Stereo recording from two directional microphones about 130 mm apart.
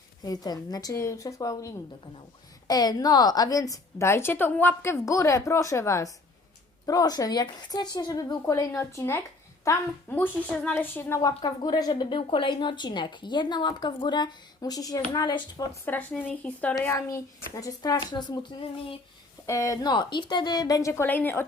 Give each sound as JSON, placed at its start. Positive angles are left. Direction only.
{"t": 0.2, "sound": "a woman's voice", "side_deg": 30}
{"t": 11.4, "sound": "a woman's voice", "side_deg": 30}
{"t": 15.7, "sound": "a woman's voice", "side_deg": 15}
{"t": 19.5, "sound": "a woman's voice", "side_deg": 25}